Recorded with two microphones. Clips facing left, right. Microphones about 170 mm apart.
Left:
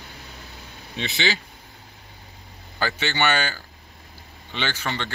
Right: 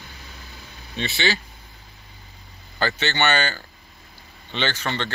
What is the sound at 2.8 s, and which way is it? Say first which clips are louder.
Speech: right 1 dB; 10° left (ahead or behind).